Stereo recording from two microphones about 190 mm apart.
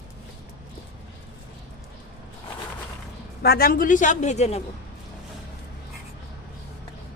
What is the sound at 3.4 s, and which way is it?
Speech, 55° left (ahead or behind).